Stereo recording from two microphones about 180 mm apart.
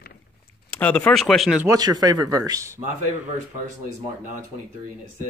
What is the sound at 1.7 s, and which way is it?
A man's voice, 20° right (ahead or behind).